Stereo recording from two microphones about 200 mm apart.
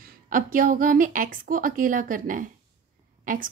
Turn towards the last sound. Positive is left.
turn(degrees=-40)  # may be behind; listen again after turning